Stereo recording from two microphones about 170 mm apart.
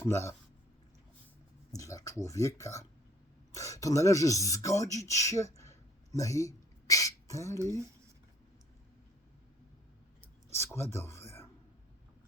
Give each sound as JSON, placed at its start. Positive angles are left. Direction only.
{"t": 0.0, "sound": "speech", "side_deg": 15}
{"t": 1.7, "sound": "speech", "side_deg": 20}
{"t": 6.1, "sound": "a sound", "side_deg": 20}
{"t": 10.5, "sound": "speech", "side_deg": 15}